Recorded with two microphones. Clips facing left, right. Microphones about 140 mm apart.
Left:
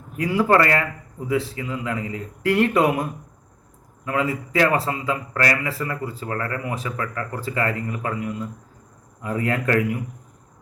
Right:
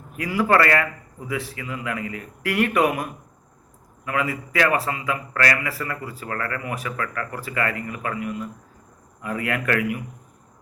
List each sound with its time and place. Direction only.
0.2 s a man's voice: 25° left (ahead or behind)